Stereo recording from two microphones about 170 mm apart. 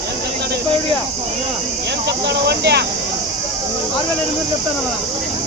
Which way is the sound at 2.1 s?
75° right (ahead or behind).